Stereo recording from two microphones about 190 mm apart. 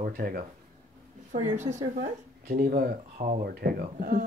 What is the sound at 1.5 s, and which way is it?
Speech, 40° right (ahead or behind).